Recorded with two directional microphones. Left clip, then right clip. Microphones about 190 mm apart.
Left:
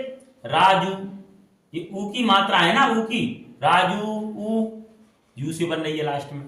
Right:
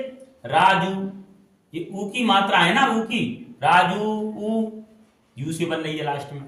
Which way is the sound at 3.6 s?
15° right (ahead or behind).